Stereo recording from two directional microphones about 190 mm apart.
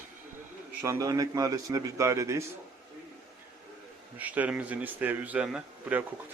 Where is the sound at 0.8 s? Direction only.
15° right (ahead or behind).